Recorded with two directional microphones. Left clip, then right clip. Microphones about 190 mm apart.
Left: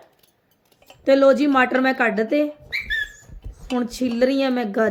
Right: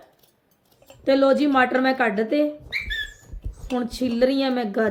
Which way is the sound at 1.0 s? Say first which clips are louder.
Left 3 dB; 25° left (ahead or behind).